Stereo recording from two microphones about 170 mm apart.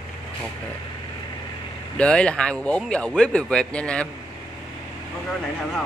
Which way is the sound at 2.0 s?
5° left (ahead or behind).